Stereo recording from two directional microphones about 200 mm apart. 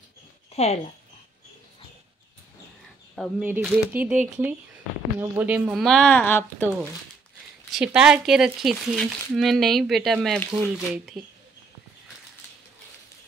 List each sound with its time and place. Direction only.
0.5 s a sound: 30° left (ahead or behind)
3.2 s speech: 5° right (ahead or behind)
5.2 s speech: 10° right (ahead or behind); by 6.9 s 10° left (ahead or behind)
7.7 s speech: 5° right (ahead or behind)